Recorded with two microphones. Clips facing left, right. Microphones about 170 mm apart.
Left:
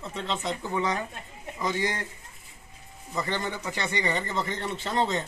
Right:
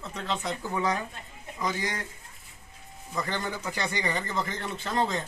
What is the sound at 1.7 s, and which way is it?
Speech, 25° left (ahead or behind).